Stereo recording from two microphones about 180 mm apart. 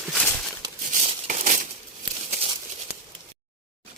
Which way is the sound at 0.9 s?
45° right (ahead or behind).